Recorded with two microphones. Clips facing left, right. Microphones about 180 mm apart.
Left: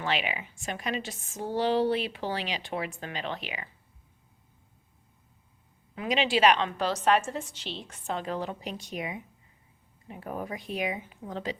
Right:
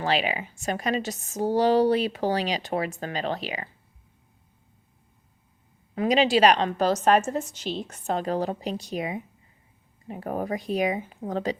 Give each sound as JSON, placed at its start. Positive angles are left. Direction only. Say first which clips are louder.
{"t": 0.0, "sound": "a woman's voice", "louder": "right 5 dB", "side_deg": -35}
{"t": 5.9, "sound": "a woman's voice", "louder": "right 6 dB", "side_deg": -40}